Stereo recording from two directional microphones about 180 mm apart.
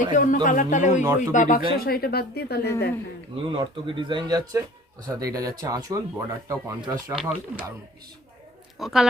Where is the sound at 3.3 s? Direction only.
30° right (ahead or behind).